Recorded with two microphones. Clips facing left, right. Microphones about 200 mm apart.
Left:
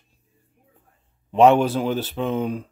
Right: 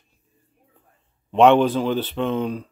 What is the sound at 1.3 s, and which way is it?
Speech, 5° left (ahead or behind).